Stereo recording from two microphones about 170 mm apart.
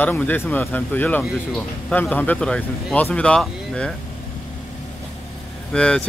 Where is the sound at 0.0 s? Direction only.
10° left (ahead or behind).